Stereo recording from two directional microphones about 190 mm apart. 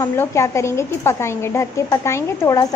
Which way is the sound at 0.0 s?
15° left (ahead or behind).